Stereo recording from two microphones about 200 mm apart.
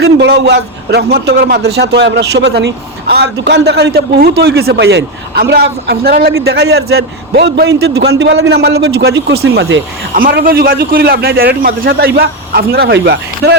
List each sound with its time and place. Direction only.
0.0 s a man's voice: 55° right (ahead or behind)
10.2 s a man's voice: 45° right (ahead or behind)